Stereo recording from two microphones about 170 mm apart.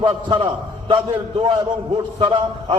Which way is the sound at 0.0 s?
25° right (ahead or behind).